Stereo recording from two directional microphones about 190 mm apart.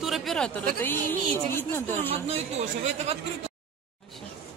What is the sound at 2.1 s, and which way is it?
Speech, 35° right (ahead or behind).